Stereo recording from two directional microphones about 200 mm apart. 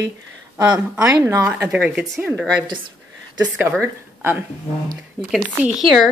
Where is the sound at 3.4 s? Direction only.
10° right (ahead or behind).